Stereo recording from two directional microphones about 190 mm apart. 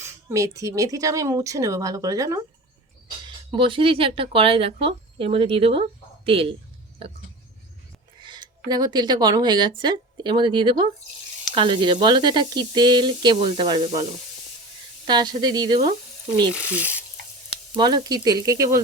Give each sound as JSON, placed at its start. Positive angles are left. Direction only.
{"t": 0.0, "sound": "speech", "side_deg": -15}
{"t": 8.2, "sound": "speech", "side_deg": -25}
{"t": 15.0, "sound": "speech", "side_deg": -20}
{"t": 16.7, "sound": "speech", "side_deg": -5}
{"t": 17.7, "sound": "speech", "side_deg": -20}